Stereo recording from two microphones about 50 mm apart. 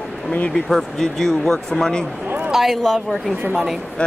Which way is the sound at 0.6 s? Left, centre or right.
Centre.